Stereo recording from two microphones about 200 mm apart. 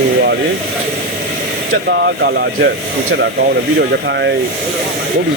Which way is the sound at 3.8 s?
60° right (ahead or behind).